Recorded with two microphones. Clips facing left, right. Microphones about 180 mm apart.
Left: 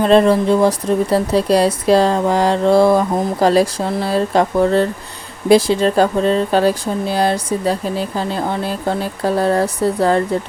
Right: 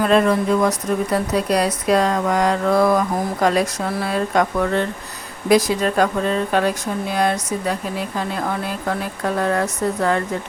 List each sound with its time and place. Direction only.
0.0 s speech: 30° left (ahead or behind)